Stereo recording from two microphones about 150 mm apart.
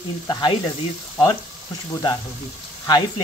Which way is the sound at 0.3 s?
30° left (ahead or behind).